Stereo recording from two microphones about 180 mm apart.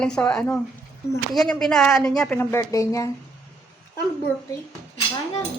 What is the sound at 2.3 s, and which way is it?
Speech, 15° left (ahead or behind).